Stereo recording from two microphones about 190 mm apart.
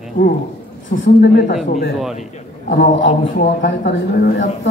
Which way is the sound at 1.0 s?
60° left (ahead or behind).